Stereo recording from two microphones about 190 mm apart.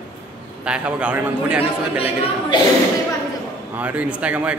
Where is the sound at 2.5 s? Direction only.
25° left (ahead or behind).